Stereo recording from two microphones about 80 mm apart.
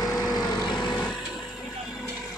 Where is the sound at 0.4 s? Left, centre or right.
Left.